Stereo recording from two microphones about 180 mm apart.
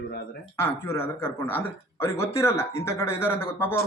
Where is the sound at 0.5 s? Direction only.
15° left (ahead or behind).